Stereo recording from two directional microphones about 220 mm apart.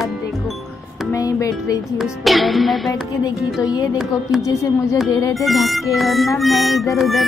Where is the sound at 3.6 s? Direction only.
15° left (ahead or behind).